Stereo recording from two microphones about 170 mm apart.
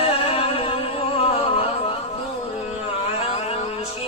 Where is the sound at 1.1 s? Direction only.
35° left (ahead or behind).